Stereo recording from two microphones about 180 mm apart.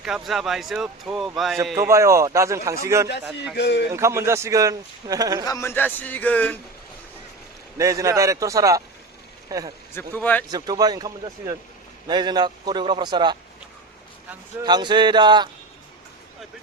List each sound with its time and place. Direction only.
0.0 s speech: 5° right (ahead or behind)
1.7 s speech: 15° right (ahead or behind)
3.6 s a man's voice: 70° left (ahead or behind)
3.9 s speech: 15° right (ahead or behind)
5.5 s a man's voice: 15° left (ahead or behind)
7.8 s a man's voice: 15° right (ahead or behind)
9.9 s a man's voice: 10° left (ahead or behind)
10.5 s a man's voice: 20° right (ahead or behind)
14.6 s a man's voice: 25° right (ahead or behind)